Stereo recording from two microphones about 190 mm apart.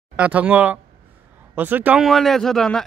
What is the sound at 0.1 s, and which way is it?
Speech, 10° right (ahead or behind).